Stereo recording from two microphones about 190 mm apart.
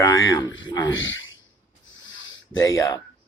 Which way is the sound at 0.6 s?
20° left (ahead or behind).